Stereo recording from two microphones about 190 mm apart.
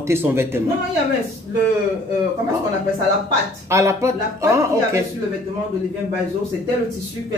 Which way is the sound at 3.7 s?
15° right (ahead or behind).